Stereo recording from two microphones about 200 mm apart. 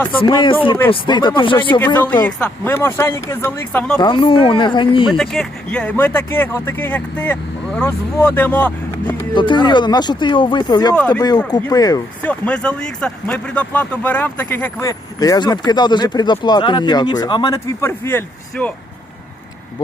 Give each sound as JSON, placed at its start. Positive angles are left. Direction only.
{"t": 0.2, "sound": "speech", "side_deg": 25}
{"t": 2.2, "sound": "speech", "side_deg": 10}
{"t": 4.0, "sound": "speech", "side_deg": 25}
{"t": 5.1, "sound": "speech", "side_deg": 0}
{"t": 9.3, "sound": "speech", "side_deg": 25}
{"t": 12.2, "sound": "speech", "side_deg": 5}